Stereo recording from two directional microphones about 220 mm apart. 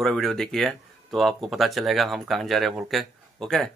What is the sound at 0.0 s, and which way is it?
Speech, centre (ahead or behind).